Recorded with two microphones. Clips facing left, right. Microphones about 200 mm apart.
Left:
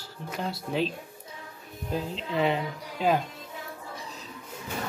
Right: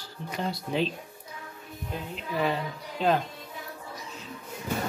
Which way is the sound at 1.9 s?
30° left (ahead or behind).